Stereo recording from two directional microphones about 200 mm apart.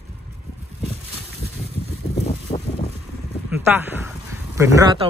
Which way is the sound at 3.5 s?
10° right (ahead or behind).